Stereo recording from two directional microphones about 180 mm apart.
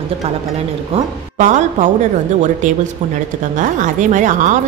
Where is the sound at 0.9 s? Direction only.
40° right (ahead or behind).